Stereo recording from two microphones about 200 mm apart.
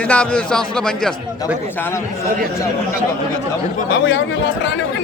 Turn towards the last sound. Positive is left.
turn(degrees=70)  # may be behind; listen again after turning